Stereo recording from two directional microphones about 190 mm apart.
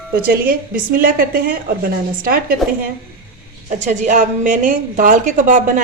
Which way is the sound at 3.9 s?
40° right (ahead or behind).